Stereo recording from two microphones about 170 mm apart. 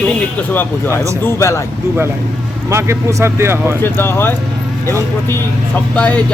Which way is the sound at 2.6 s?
15° right (ahead or behind).